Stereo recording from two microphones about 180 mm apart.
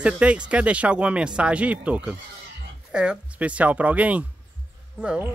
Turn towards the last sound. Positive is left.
turn(degrees=-5)  # may be behind; listen again after turning